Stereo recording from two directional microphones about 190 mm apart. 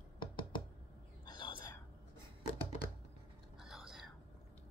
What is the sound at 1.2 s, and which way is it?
Whispering, 25° left (ahead or behind).